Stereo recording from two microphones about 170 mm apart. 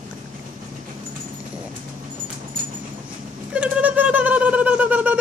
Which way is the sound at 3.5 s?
10° right (ahead or behind).